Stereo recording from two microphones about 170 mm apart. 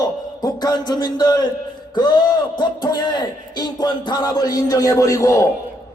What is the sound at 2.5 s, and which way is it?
Music, 25° left (ahead or behind).